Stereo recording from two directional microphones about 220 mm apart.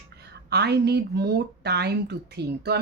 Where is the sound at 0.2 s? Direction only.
50° right (ahead or behind).